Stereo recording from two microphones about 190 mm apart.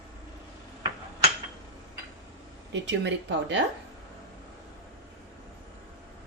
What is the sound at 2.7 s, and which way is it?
Speech, 65° right (ahead or behind).